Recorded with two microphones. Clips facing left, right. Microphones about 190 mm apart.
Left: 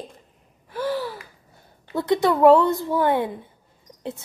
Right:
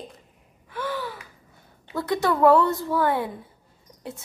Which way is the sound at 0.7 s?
35° left (ahead or behind).